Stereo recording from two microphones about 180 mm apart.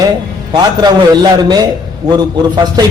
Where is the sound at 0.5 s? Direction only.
20° right (ahead or behind).